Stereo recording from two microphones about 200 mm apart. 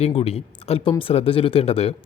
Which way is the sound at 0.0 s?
30° left (ahead or behind).